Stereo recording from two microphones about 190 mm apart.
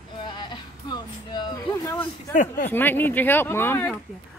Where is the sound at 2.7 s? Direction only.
10° left (ahead or behind).